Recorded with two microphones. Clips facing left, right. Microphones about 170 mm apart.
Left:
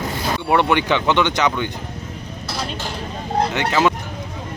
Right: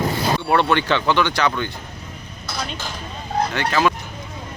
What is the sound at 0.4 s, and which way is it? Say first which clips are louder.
Speech: left 3 dB; 15° left (ahead or behind).